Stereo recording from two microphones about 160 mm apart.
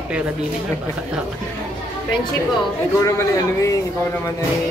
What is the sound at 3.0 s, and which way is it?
Speech, 20° left (ahead or behind).